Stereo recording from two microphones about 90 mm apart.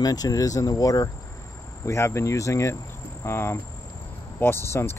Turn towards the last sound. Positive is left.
turn(degrees=30)  # may be behind; listen again after turning